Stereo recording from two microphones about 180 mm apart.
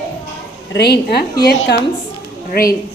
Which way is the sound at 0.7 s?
65° left (ahead or behind).